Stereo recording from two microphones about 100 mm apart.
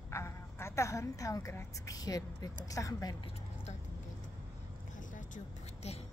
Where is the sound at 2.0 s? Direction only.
40° left (ahead or behind).